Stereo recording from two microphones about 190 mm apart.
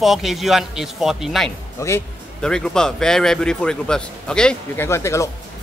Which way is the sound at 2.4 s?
5° left (ahead or behind).